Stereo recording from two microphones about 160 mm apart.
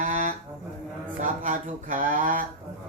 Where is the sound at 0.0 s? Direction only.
55° right (ahead or behind).